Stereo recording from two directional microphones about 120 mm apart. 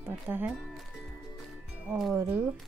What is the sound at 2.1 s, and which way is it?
Speech, 15° right (ahead or behind).